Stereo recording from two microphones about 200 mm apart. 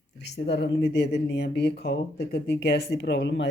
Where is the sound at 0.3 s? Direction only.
55° left (ahead or behind).